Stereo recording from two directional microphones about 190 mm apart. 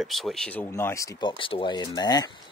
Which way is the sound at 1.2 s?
25° left (ahead or behind).